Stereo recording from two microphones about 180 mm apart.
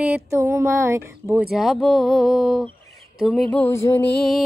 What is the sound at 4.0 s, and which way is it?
Music, 65° left (ahead or behind).